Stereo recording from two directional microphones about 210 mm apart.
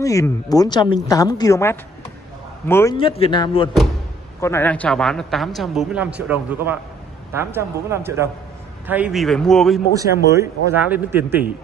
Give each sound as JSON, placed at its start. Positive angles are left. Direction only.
{"t": 0.0, "sound": "a woman's voice", "side_deg": 15}
{"t": 3.0, "sound": "speech", "side_deg": 25}
{"t": 4.4, "sound": "a man's voice", "side_deg": 10}
{"t": 9.9, "sound": "a man's voice", "side_deg": -15}